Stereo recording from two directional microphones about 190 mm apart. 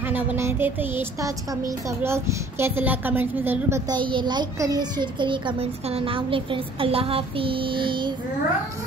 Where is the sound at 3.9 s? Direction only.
25° right (ahead or behind).